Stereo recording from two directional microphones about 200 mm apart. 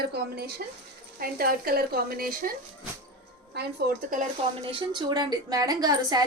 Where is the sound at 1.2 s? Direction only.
45° right (ahead or behind).